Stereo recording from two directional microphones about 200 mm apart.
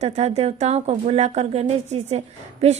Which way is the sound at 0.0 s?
35° right (ahead or behind).